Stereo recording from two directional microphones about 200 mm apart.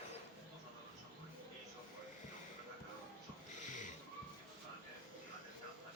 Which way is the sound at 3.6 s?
40° left (ahead or behind).